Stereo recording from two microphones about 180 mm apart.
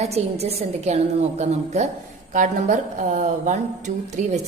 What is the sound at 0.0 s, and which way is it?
A woman's voice, 35° right (ahead or behind).